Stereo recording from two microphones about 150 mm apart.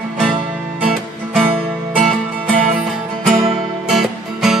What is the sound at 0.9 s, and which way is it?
Music, 5° left (ahead or behind).